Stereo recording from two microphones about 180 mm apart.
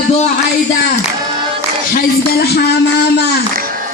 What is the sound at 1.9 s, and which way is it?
A man's voice, 60° left (ahead or behind).